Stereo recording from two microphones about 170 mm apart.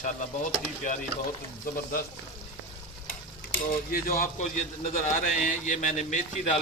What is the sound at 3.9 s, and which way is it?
Speech, 55° left (ahead or behind).